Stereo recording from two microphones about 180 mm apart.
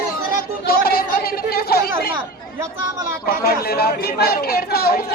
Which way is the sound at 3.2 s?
60° left (ahead or behind).